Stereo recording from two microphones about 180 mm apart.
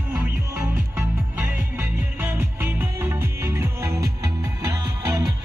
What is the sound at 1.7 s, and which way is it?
Music, 10° right (ahead or behind).